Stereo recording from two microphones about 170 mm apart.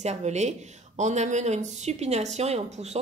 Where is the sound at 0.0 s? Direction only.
40° right (ahead or behind).